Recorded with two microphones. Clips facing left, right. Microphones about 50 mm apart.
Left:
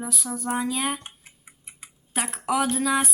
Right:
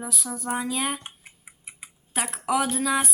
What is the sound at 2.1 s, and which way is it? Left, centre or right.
Speech, centre.